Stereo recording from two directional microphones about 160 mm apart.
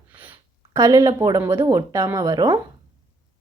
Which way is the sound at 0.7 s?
20° right (ahead or behind).